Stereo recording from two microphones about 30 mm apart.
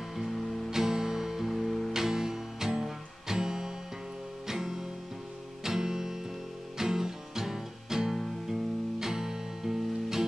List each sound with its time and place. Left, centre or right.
0.1 s music: centre
1.6 s music: centre
2.0 s music: centre